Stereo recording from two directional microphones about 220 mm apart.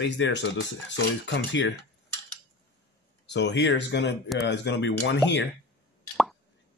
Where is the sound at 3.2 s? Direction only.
50° left (ahead or behind).